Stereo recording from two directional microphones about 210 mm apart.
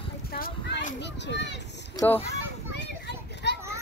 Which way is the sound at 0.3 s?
50° left (ahead or behind).